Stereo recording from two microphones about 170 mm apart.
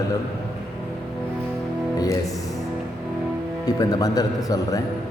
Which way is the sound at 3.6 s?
20° left (ahead or behind).